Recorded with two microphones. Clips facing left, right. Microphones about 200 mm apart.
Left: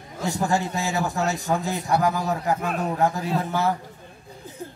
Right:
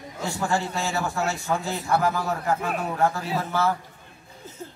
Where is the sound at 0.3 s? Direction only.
20° left (ahead or behind).